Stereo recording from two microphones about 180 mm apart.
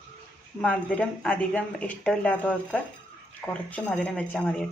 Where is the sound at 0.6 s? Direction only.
5° left (ahead or behind).